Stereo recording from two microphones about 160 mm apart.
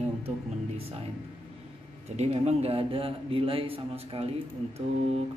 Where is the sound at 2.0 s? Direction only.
45° right (ahead or behind).